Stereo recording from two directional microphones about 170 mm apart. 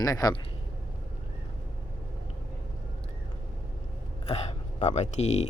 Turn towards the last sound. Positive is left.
turn(degrees=40)  # may be behind; listen again after turning